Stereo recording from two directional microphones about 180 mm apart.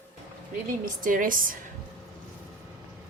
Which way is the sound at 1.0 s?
50° right (ahead or behind).